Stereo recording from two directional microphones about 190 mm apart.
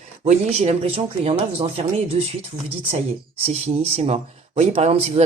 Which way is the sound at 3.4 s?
30° right (ahead or behind).